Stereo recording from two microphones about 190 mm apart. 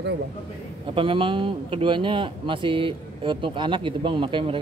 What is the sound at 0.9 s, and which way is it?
Speech, 25° right (ahead or behind).